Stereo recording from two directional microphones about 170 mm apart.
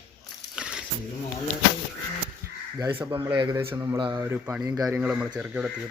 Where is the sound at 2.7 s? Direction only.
25° right (ahead or behind).